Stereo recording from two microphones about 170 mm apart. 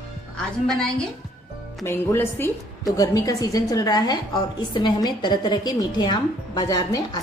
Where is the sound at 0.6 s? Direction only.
5° left (ahead or behind).